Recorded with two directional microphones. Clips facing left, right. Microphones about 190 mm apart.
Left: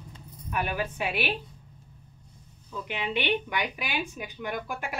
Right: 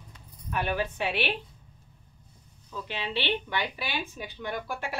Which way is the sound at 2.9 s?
15° left (ahead or behind).